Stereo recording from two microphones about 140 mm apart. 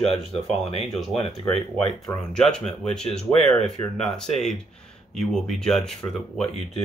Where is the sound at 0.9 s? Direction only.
Centre (ahead or behind).